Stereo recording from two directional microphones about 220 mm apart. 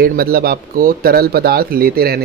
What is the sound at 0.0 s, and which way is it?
Speech, 45° right (ahead or behind).